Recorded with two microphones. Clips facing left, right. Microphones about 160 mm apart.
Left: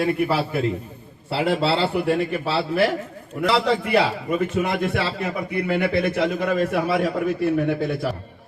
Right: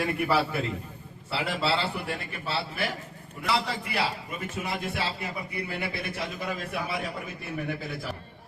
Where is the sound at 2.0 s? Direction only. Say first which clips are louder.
Left 13 dB; 75° left (ahead or behind).